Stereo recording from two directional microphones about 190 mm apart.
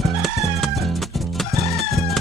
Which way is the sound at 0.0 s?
Centre (ahead or behind).